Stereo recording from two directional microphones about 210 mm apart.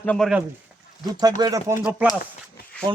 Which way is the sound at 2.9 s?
20° right (ahead or behind).